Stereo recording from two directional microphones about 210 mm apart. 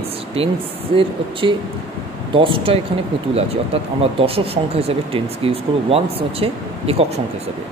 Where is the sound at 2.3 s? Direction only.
25° right (ahead or behind).